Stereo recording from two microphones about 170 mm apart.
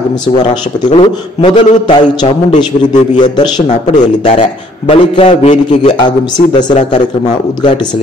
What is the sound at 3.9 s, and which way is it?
A man's voice, 40° left (ahead or behind).